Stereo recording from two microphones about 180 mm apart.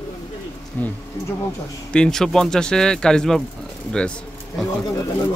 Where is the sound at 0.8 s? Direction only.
10° left (ahead or behind).